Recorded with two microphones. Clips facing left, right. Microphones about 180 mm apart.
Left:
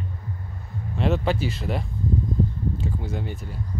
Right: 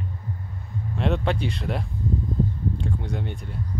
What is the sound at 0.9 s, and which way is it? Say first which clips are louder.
Speech: left 1 dB; centre (ahead or behind).